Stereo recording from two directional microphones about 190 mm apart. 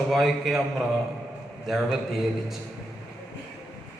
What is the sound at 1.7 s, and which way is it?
Speech, centre (ahead or behind).